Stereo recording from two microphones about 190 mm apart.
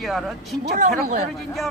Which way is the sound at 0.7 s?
40° right (ahead or behind).